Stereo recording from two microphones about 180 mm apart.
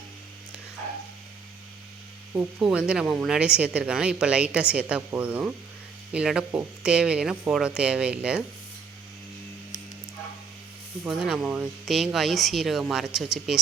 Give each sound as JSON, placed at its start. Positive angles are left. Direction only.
{"t": 2.3, "sound": "speech", "side_deg": -5}
{"t": 11.0, "sound": "speech", "side_deg": -5}